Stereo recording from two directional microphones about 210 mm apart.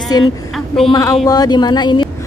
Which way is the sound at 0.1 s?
20° left (ahead or behind).